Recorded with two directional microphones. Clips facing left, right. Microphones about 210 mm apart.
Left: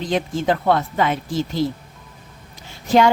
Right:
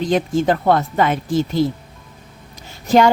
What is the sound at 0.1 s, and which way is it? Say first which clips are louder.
Speech: right 2 dB; 45° right (ahead or behind).